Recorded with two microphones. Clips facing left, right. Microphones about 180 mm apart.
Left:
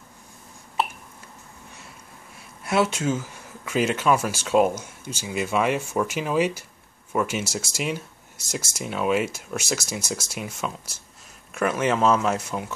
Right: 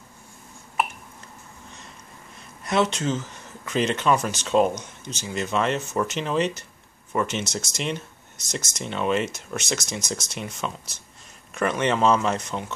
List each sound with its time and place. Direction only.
2.6 s speech: 5° left (ahead or behind)